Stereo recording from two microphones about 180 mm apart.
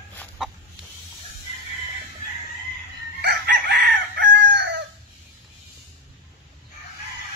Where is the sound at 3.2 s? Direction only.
70° right (ahead or behind).